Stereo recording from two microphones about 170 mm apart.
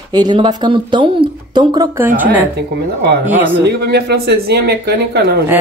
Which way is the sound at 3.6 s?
70° right (ahead or behind).